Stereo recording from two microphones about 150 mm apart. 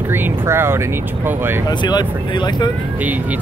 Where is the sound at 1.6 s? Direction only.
30° left (ahead or behind).